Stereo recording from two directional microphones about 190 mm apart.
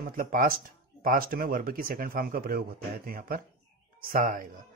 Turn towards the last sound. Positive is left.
turn(degrees=-45)  # may be behind; listen again after turning